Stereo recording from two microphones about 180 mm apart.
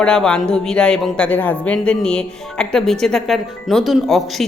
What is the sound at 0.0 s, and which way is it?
A man's voice, 5° left (ahead or behind).